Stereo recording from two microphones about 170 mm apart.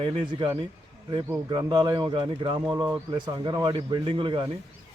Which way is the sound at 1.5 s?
25° right (ahead or behind).